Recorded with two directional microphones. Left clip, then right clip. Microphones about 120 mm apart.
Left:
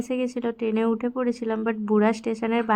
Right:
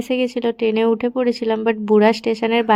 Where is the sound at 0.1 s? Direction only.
35° right (ahead or behind).